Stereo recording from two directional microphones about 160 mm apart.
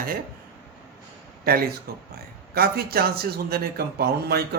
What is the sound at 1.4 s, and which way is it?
Speech, 70° right (ahead or behind).